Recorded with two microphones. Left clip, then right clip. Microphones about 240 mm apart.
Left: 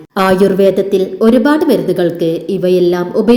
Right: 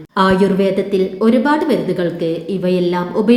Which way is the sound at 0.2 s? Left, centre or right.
Centre.